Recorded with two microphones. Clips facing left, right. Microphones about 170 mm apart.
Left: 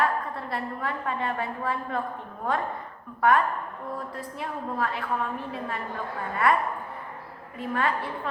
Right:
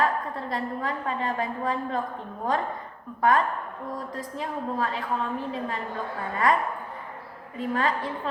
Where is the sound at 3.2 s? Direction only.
30° right (ahead or behind).